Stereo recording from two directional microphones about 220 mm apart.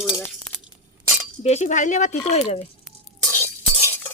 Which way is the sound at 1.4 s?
30° left (ahead or behind).